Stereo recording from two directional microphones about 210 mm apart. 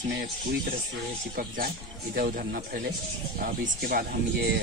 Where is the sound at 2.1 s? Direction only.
45° right (ahead or behind).